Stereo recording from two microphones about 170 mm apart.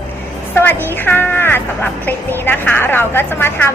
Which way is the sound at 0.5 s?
10° left (ahead or behind).